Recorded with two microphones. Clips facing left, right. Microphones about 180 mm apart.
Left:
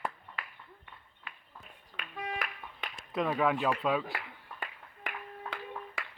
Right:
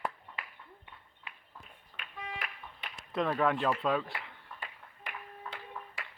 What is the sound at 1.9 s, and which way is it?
Music, 90° left.